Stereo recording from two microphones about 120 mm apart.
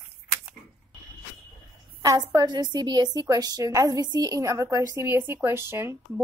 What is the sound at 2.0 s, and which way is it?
A woman's voice, 30° right (ahead or behind).